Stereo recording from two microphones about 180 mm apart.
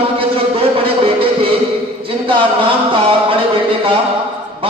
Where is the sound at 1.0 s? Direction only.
30° right (ahead or behind).